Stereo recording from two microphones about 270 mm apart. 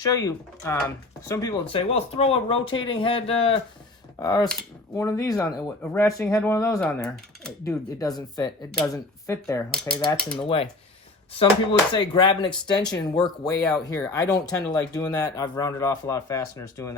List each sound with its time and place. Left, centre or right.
0.0 s speech: centre
7.9 s speech: centre
10.4 s speech: centre
13.6 s speech: centre
14.1 s speech: centre